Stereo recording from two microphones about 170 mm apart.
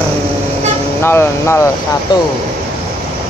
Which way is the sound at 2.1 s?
25° left (ahead or behind).